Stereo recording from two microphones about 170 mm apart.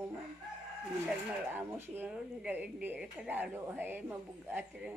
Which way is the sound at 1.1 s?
10° right (ahead or behind).